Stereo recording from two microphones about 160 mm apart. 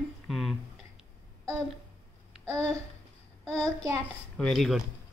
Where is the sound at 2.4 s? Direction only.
5° left (ahead or behind).